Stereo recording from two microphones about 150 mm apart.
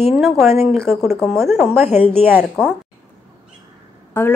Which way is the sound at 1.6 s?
5° right (ahead or behind).